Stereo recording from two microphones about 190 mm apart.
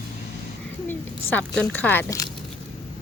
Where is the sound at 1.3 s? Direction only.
5° left (ahead or behind).